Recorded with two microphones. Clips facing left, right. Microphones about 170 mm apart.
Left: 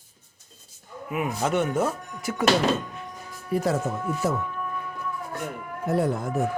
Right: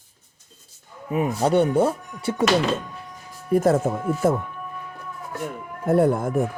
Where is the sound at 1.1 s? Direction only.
35° right (ahead or behind).